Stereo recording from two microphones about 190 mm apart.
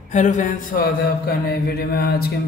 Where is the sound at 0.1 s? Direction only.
40° left (ahead or behind).